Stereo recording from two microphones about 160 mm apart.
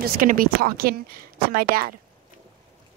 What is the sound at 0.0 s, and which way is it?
Speech, 65° right (ahead or behind).